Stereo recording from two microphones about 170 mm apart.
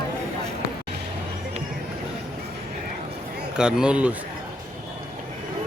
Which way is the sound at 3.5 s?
5° right (ahead or behind).